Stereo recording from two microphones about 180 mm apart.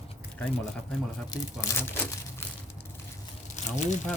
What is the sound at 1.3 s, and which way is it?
Speech, 15° left (ahead or behind).